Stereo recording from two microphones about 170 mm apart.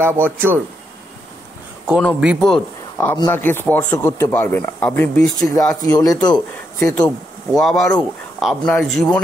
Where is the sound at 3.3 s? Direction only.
10° left (ahead or behind).